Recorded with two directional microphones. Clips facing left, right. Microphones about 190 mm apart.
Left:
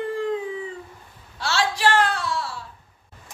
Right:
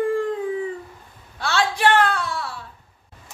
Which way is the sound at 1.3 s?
55° right (ahead or behind).